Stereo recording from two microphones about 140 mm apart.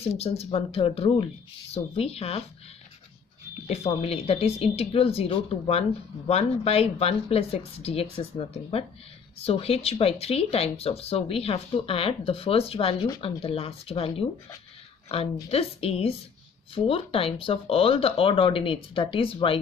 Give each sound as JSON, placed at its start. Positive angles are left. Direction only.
{"t": 0.0, "sound": "speech", "side_deg": 50}
{"t": 3.6, "sound": "speech", "side_deg": 45}
{"t": 15.5, "sound": "speech", "side_deg": 45}